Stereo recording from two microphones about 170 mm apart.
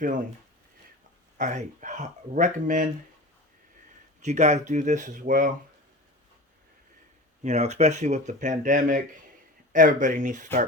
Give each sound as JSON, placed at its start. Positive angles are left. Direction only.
{"t": 1.4, "sound": "speech", "side_deg": -45}
{"t": 4.2, "sound": "speech", "side_deg": -40}
{"t": 7.4, "sound": "speech", "side_deg": -40}